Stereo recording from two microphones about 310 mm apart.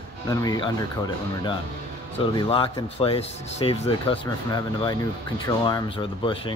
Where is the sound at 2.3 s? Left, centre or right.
Centre.